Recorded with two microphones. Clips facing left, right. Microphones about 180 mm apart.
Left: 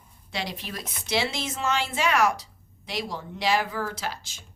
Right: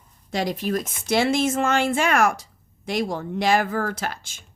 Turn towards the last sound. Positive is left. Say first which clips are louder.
# right 4 dB
turn(degrees=-50)  # may be behind; listen again after turning